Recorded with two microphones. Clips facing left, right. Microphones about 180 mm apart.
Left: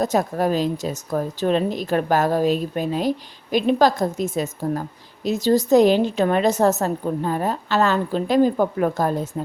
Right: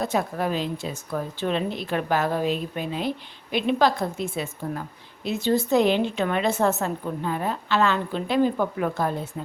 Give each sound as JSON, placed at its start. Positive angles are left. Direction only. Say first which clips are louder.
{"t": 0.0, "sound": "speech", "louder": "left 5 dB", "side_deg": 40}